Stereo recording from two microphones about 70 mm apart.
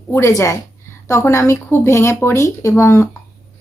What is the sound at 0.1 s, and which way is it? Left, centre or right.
Speech, left.